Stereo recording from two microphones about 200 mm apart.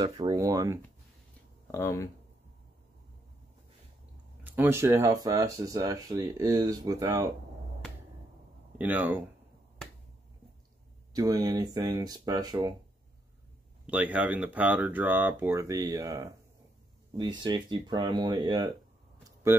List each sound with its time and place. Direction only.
0.0 s speech: 20° right (ahead or behind)
1.7 s speech: 15° left (ahead or behind)
4.4 s speech: 10° right (ahead or behind)
8.7 s speech: 10° right (ahead or behind)
11.1 s speech: 20° right (ahead or behind)
13.8 s speech: 5° right (ahead or behind)